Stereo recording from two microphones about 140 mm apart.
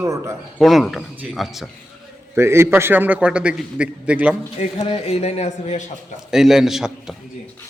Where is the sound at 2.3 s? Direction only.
20° right (ahead or behind).